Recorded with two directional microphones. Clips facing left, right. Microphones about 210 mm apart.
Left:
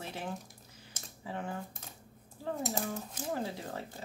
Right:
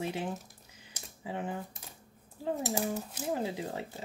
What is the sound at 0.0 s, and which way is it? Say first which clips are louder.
Speech: right 5 dB; 15° right (ahead or behind).